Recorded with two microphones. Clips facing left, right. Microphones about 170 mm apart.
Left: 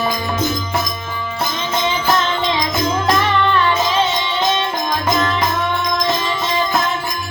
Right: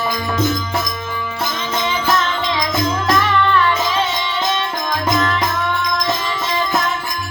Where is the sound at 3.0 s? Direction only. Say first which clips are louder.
Even; 25° left (ahead or behind).